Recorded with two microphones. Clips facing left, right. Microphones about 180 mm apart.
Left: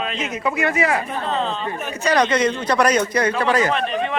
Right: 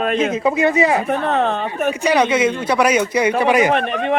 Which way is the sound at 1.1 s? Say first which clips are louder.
Right 6 dB; 60° right (ahead or behind).